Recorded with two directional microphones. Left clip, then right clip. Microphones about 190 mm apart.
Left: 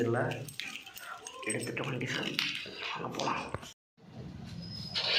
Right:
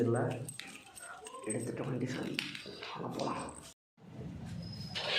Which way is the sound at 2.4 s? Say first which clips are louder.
Left 7 dB; 40° right (ahead or behind).